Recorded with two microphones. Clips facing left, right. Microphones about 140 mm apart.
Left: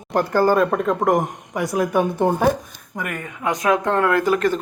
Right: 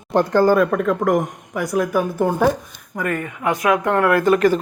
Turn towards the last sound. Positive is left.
turn(degrees=0)  # may be behind; listen again after turning